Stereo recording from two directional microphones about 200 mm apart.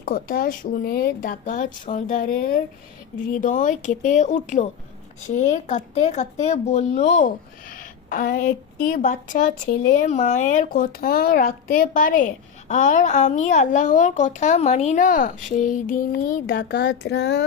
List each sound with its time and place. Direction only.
0.0 s a woman's voice: 45° left (ahead or behind)